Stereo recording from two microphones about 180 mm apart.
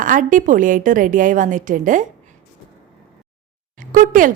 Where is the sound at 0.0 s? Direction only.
45° right (ahead or behind).